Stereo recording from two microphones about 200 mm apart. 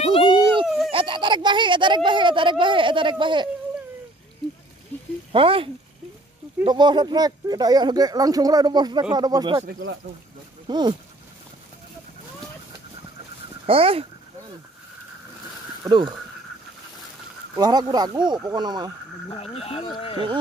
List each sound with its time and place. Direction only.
0.2 s a sound: 20° right (ahead or behind)
0.7 s baby cry: centre (ahead or behind)
0.9 s speech: 25° right (ahead or behind)
5.3 s speech: 25° right (ahead or behind)
10.7 s speech: 20° right (ahead or behind)
13.7 s speech: 30° right (ahead or behind)
15.8 s speech: 20° right (ahead or behind)
17.6 s speech: 20° right (ahead or behind)
19.3 s speech: 30° left (ahead or behind)